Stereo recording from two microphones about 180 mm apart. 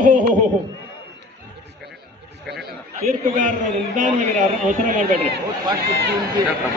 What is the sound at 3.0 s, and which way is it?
A man's voice, 45° right (ahead or behind).